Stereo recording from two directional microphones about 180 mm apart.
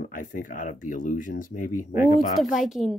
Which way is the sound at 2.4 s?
Centre (ahead or behind).